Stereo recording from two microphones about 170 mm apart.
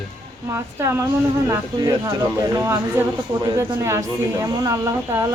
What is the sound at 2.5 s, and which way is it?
A woman's voice, 15° right (ahead or behind).